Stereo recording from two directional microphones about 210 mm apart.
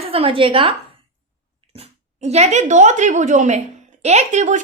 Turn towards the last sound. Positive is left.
turn(degrees=-35)  # may be behind; listen again after turning